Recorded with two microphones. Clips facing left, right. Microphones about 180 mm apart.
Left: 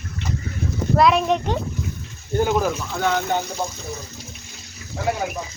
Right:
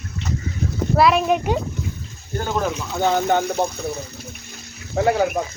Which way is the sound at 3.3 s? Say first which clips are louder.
Right 5 dB; 60° right (ahead or behind).